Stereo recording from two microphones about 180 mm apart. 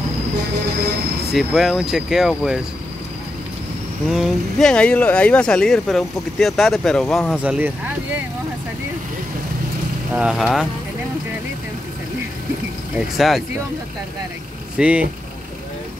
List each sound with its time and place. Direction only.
1.3 s speech: centre (ahead or behind)
4.1 s speech: centre (ahead or behind)
10.1 s speech: 5° right (ahead or behind)
12.9 s speech: centre (ahead or behind)
14.8 s speech: 5° right (ahead or behind)